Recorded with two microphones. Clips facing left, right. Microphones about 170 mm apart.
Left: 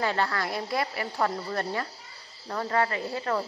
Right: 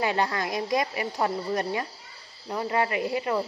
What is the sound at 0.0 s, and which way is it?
Speech, 15° right (ahead or behind).